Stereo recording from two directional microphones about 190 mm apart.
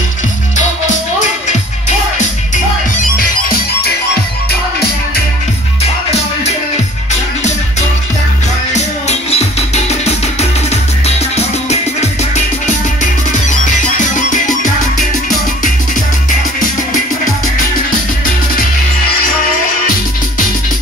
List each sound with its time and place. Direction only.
1.5 s music: 40° left (ahead or behind)
3.2 s music: 50° left (ahead or behind)
8.7 s music: 35° left (ahead or behind)